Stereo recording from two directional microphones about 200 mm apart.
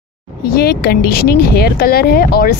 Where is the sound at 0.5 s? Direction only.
50° left (ahead or behind).